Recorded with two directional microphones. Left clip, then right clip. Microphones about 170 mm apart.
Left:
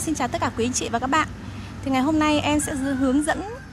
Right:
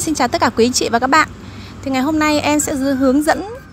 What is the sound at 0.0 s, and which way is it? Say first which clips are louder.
A woman's voice: right 9 dB; 25° right (ahead or behind).